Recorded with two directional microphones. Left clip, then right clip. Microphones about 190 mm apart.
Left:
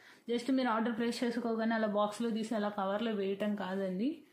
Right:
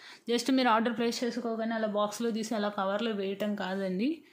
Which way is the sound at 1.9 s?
15° right (ahead or behind).